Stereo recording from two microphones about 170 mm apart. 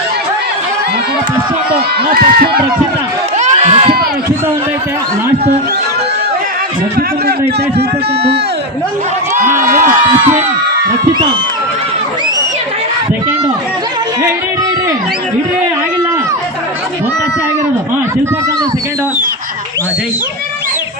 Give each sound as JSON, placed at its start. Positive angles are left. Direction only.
{"t": 2.0, "sound": "speech", "side_deg": -65}
{"t": 3.3, "sound": "crowd", "side_deg": -40}
{"t": 7.3, "sound": "a man's voice", "side_deg": -75}